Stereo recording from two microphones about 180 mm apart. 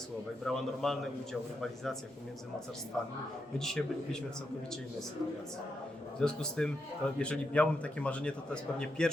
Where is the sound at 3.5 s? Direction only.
Centre (ahead or behind).